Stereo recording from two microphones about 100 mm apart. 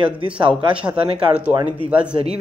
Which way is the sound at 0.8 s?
10° right (ahead or behind).